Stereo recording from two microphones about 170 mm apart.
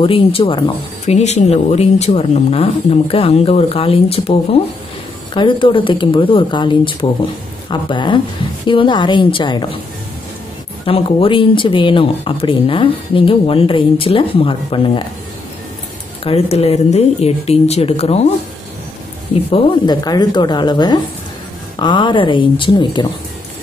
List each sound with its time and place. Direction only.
0.0 s speech: 35° left (ahead or behind)
10.9 s speech: 35° left (ahead or behind)
16.3 s speech: 35° left (ahead or behind)
19.5 s speech: 25° left (ahead or behind)